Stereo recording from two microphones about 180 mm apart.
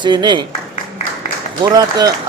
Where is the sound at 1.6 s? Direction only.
20° right (ahead or behind).